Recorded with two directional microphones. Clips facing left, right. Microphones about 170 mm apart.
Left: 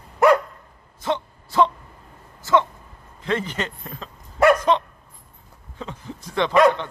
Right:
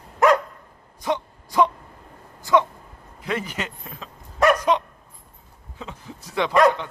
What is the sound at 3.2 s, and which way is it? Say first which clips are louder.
Speech: left 3 dB; 10° right (ahead or behind).